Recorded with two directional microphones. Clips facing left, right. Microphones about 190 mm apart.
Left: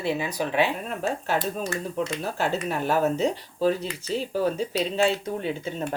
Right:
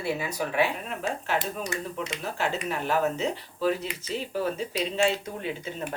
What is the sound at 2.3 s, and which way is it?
Speech, 40° left (ahead or behind).